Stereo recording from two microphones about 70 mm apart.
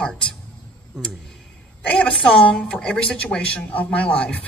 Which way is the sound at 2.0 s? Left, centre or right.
Centre.